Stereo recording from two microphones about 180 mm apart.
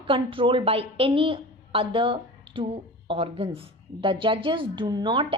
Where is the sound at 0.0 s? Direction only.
30° right (ahead or behind).